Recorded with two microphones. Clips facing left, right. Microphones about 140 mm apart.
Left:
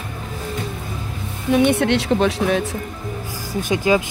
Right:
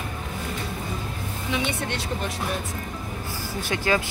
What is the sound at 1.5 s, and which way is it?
Speech, 60° left (ahead or behind).